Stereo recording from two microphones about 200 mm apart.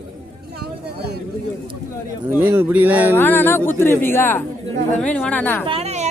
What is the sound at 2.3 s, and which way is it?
Speech, 10° right (ahead or behind).